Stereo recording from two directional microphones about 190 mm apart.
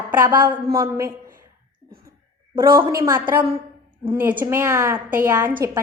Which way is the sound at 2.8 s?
20° right (ahead or behind).